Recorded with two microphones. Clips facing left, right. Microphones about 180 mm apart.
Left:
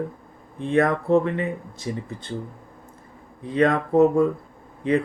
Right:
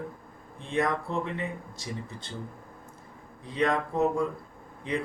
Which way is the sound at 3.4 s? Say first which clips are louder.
Left 7 dB; 55° left (ahead or behind).